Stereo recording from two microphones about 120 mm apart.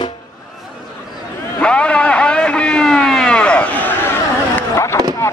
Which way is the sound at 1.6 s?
10° left (ahead or behind).